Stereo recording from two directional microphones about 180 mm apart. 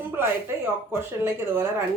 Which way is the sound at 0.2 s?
15° right (ahead or behind).